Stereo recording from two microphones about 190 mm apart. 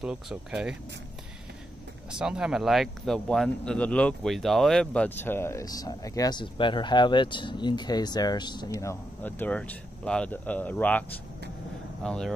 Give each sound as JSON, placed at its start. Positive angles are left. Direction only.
{"t": 0.0, "sound": "speech", "side_deg": -5}
{"t": 2.0, "sound": "speech", "side_deg": -5}